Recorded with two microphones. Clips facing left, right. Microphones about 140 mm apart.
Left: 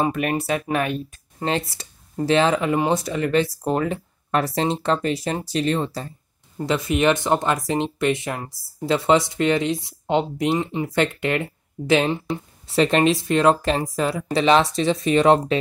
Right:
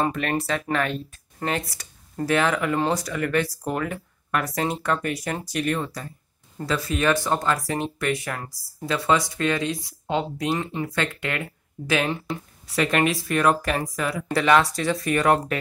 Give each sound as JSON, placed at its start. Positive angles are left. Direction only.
{"t": 0.0, "sound": "speech", "side_deg": 15}